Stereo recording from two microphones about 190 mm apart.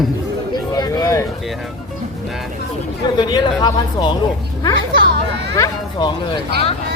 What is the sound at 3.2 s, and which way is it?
Speech, 20° left (ahead or behind).